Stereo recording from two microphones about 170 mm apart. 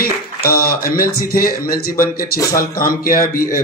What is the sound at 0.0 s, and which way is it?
A man's voice, 60° left (ahead or behind).